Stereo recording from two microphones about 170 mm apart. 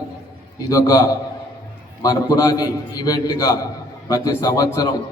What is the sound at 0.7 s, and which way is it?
A man's voice, 20° left (ahead or behind).